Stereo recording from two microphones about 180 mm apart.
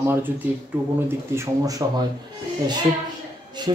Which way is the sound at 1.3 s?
15° right (ahead or behind).